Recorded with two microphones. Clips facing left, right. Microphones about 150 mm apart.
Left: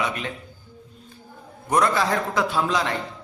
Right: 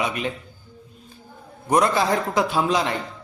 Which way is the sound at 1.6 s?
20° right (ahead or behind).